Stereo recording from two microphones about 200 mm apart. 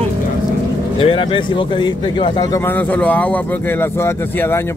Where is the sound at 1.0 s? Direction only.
25° left (ahead or behind).